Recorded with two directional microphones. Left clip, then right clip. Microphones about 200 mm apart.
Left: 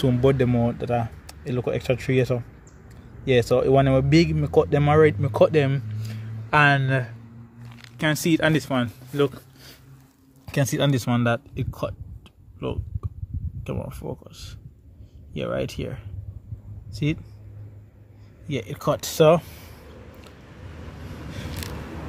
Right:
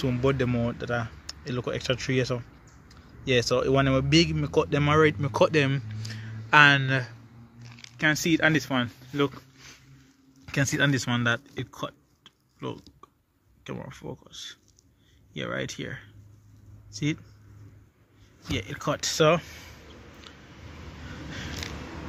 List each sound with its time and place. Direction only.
0.0 s speech: 20° left (ahead or behind)
14.0 s speech: 5° right (ahead or behind)
16.9 s speech: 10° left (ahead or behind)
18.5 s speech: 15° left (ahead or behind)